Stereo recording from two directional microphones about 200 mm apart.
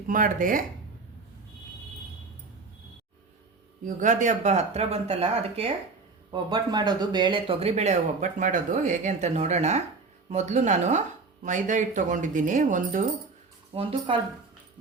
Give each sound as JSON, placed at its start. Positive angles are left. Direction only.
{"t": 0.1, "sound": "speech", "side_deg": -45}
{"t": 3.8, "sound": "speech", "side_deg": -40}
{"t": 14.1, "sound": "speech", "side_deg": -25}